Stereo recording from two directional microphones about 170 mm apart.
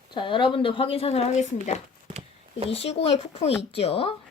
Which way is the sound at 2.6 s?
35° left (ahead or behind).